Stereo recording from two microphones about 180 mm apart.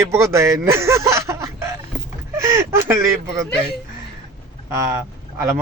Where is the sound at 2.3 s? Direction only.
15° right (ahead or behind).